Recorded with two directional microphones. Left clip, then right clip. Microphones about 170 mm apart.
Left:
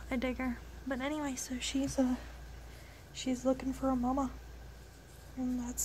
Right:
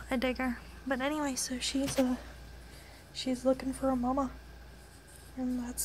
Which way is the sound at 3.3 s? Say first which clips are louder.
Right 3 dB; 15° right (ahead or behind).